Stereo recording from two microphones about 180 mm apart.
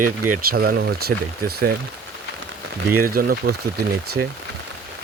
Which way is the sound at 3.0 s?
55° right (ahead or behind).